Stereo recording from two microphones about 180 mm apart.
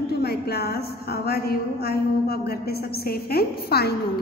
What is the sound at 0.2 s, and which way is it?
A woman's voice, 65° left (ahead or behind).